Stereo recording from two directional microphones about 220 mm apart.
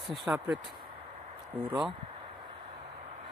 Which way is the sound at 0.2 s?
Centre (ahead or behind).